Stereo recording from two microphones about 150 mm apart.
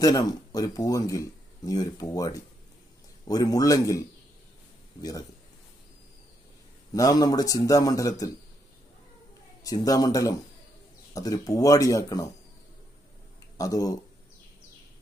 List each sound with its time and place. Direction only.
0.0 s speech: 25° left (ahead or behind)
6.9 s speech: 25° left (ahead or behind)
9.6 s speech: 25° left (ahead or behind)
13.6 s speech: 25° left (ahead or behind)